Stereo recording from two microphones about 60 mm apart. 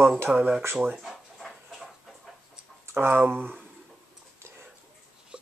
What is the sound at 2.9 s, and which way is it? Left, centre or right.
Speech, right.